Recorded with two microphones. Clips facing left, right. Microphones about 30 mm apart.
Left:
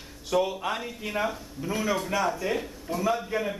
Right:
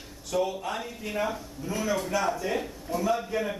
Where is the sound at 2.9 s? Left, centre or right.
Left.